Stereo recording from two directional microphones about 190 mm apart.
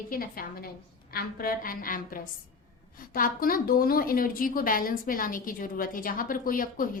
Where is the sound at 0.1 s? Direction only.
50° left (ahead or behind).